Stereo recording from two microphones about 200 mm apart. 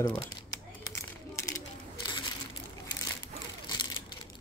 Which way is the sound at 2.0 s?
20° left (ahead or behind).